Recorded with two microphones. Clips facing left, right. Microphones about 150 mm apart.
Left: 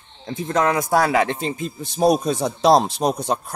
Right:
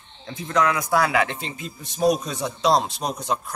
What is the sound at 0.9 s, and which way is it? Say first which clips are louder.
A man's voice: left 3 dB; 35° left (ahead or behind).